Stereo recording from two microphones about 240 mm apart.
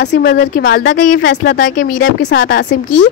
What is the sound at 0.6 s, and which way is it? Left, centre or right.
Speech, left.